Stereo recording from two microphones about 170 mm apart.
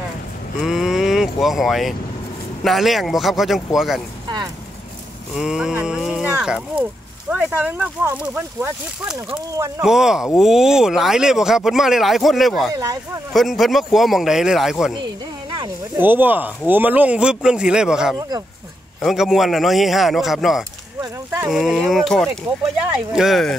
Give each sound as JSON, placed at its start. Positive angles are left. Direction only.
{"t": 0.6, "sound": "speech", "side_deg": 0}
{"t": 5.3, "sound": "speech", "side_deg": -5}
{"t": 16.0, "sound": "speech", "side_deg": -10}
{"t": 21.0, "sound": "speech", "side_deg": -20}
{"t": 21.5, "sound": "speech", "side_deg": 0}